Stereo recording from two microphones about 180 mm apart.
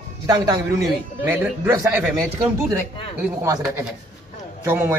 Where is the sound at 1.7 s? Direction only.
15° right (ahead or behind).